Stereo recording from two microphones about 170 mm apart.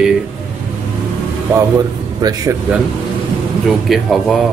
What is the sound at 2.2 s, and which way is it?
Speech, 20° right (ahead or behind).